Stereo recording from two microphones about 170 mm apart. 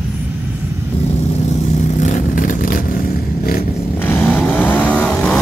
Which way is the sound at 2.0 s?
50° left (ahead or behind).